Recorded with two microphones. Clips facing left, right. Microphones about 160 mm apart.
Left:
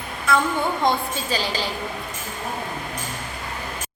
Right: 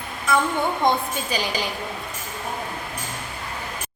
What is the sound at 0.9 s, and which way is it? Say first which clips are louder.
Speech: even; 15° right (ahead or behind).